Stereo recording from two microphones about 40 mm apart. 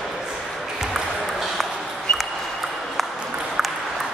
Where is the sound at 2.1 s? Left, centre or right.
Left.